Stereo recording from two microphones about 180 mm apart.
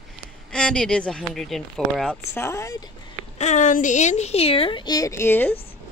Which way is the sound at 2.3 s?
15° left (ahead or behind).